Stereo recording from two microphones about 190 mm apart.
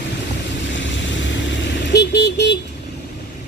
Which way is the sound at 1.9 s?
65° left (ahead or behind).